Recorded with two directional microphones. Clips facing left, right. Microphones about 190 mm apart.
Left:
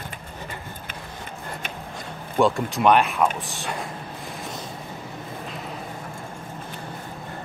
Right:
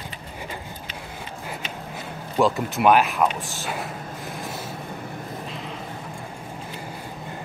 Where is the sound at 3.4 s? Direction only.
Centre (ahead or behind).